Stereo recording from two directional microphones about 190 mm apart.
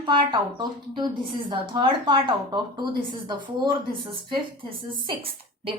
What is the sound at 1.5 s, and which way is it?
A woman's voice, 25° right (ahead or behind).